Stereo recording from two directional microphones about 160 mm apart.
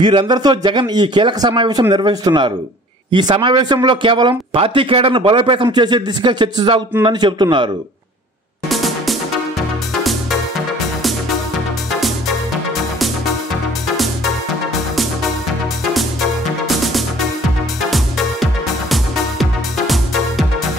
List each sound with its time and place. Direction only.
0.0 s a man's voice: 30° right (ahead or behind)
8.6 s music: centre (ahead or behind)
15.9 s music: centre (ahead or behind)